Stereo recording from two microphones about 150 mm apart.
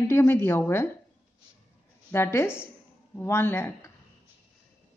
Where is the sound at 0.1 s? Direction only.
15° left (ahead or behind).